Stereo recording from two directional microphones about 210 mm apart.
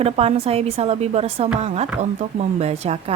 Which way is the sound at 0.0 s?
30° right (ahead or behind).